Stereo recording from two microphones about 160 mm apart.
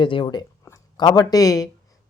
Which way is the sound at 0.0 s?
30° left (ahead or behind).